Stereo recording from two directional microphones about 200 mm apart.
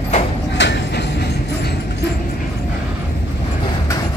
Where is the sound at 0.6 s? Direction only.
60° left (ahead or behind).